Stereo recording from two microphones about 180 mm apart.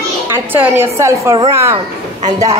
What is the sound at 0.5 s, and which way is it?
A child's voice, 15° right (ahead or behind).